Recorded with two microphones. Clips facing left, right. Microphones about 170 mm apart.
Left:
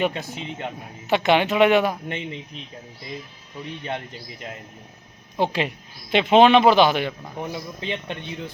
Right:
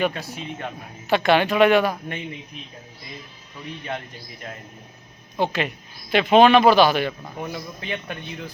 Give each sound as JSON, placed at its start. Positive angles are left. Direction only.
{"t": 0.0, "sound": "speech", "side_deg": 20}
{"t": 5.4, "sound": "speech", "side_deg": 30}